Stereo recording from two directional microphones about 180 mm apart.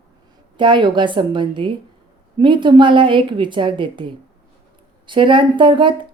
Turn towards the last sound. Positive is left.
turn(degrees=-25)  # may be behind; listen again after turning